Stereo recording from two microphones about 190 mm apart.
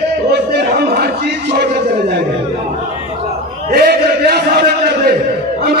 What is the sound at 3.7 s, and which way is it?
A man's voice, 55° right (ahead or behind).